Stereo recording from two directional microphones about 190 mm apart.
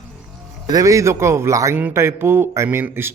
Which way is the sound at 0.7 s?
20° right (ahead or behind).